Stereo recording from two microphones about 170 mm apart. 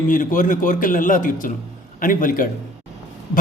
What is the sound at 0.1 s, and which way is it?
A man's voice, 50° left (ahead or behind).